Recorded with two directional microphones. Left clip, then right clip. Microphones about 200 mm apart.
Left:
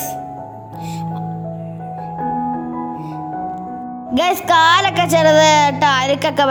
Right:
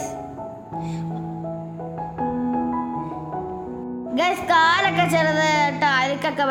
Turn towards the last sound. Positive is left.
turn(degrees=35)  # may be behind; listen again after turning